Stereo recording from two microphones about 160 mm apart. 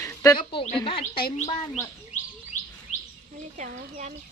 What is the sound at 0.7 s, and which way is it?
Speech, 35° left (ahead or behind).